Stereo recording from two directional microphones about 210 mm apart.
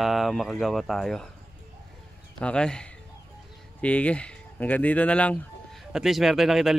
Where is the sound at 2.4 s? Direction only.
5° left (ahead or behind).